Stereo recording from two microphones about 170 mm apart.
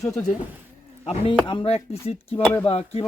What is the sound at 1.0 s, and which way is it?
Speech, 35° left (ahead or behind).